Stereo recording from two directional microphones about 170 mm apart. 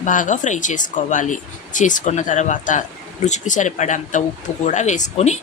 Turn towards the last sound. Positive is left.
turn(degrees=40)  # may be behind; listen again after turning